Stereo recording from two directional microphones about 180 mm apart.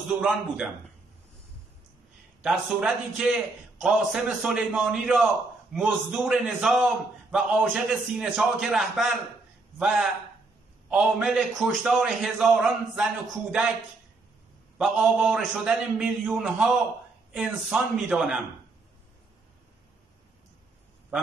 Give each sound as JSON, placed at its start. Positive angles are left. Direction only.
{"t": 0.2, "sound": "a man's voice", "side_deg": -5}
{"t": 2.4, "sound": "a man's voice", "side_deg": -5}
{"t": 14.8, "sound": "a man's voice", "side_deg": -5}